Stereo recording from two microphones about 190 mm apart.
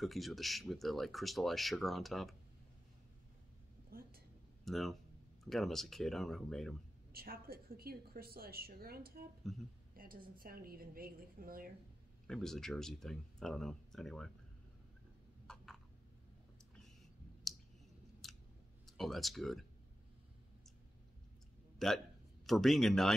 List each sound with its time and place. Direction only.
0.0 s speech: centre (ahead or behind)
3.9 s a sound: 50° right (ahead or behind)
4.6 s speech: centre (ahead or behind)
7.1 s speech: 50° right (ahead or behind)
9.5 s speech: centre (ahead or behind)
9.9 s speech: 50° right (ahead or behind)
12.3 s speech: centre (ahead or behind)
15.4 s a sound: 5° left (ahead or behind)
17.5 s clicking: centre (ahead or behind)
18.2 s scissors: centre (ahead or behind)
18.9 s speech: centre (ahead or behind)
21.7 s speech: centre (ahead or behind)